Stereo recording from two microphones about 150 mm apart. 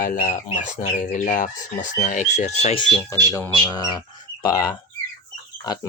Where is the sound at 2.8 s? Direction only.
5° left (ahead or behind).